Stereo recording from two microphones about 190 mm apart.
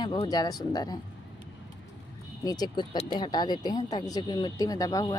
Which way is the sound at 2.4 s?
20° left (ahead or behind).